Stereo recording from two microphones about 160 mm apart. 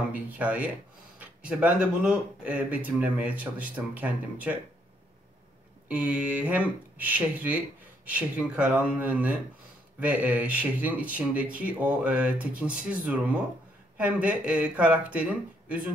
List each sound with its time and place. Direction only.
0.1 s speech: 10° right (ahead or behind)
5.9 s speech: 10° right (ahead or behind)